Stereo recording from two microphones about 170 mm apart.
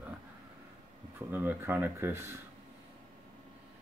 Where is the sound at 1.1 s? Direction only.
10° right (ahead or behind).